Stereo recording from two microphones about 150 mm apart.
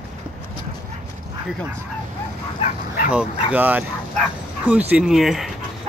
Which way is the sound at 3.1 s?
10° right (ahead or behind).